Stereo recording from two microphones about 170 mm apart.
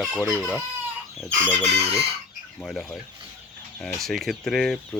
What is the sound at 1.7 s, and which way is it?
Chicken, 35° right (ahead or behind).